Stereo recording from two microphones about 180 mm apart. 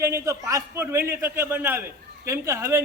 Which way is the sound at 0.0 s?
15° right (ahead or behind).